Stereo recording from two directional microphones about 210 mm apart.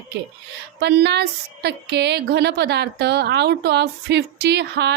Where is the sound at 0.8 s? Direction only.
50° right (ahead or behind).